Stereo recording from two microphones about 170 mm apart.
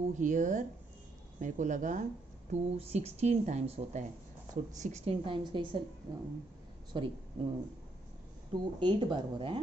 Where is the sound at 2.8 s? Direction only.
35° right (ahead or behind).